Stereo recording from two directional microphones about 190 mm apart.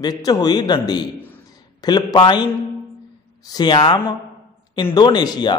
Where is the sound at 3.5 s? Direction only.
20° left (ahead or behind).